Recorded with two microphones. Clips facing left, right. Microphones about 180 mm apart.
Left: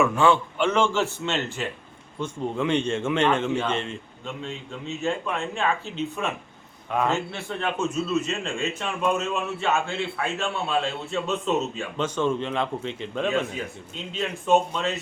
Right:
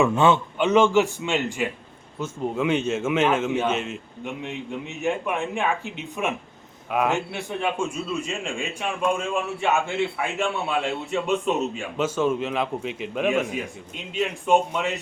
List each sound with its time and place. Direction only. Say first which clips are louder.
0.0 s a man's voice: right 1 dB; 20° right (ahead or behind)
4.4 s a man's voice: right 2 dB; 15° right (ahead or behind)